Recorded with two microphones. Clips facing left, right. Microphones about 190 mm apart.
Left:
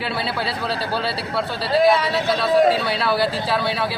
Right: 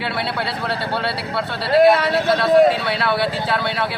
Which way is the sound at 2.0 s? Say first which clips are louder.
Right 3 dB; 55° right (ahead or behind).